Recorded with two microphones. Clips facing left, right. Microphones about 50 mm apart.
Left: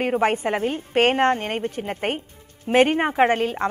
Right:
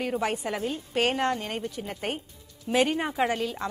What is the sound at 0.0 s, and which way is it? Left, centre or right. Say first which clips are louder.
A woman's voice: left 7 dB; left.